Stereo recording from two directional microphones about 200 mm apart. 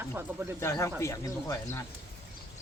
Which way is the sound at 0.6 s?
15° left (ahead or behind).